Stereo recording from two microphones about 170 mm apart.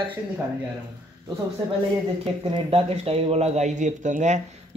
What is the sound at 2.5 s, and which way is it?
Speech, 35° right (ahead or behind).